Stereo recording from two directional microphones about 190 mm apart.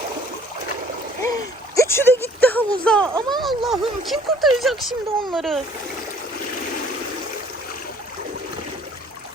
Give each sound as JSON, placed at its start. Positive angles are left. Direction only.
{"t": 1.7, "sound": "speech", "side_deg": 15}
{"t": 3.2, "sound": "speech", "side_deg": -25}
{"t": 3.4, "sound": "speech", "side_deg": 0}